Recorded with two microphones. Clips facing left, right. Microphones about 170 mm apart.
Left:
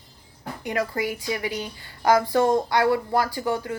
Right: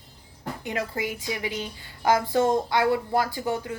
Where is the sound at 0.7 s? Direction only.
20° right (ahead or behind).